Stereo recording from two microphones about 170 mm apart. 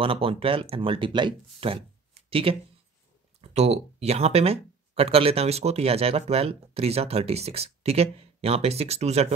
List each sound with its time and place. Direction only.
0.0 s speech: 30° right (ahead or behind)